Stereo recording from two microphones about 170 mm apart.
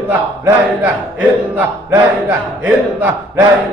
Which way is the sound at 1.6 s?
10° right (ahead or behind).